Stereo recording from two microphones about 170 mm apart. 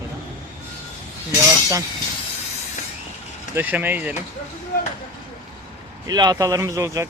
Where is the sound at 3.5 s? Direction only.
10° right (ahead or behind).